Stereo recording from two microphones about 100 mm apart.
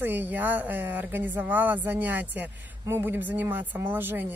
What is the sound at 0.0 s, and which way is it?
A woman's voice, 20° right (ahead or behind).